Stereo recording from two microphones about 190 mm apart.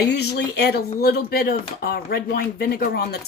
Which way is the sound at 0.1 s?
60° left (ahead or behind).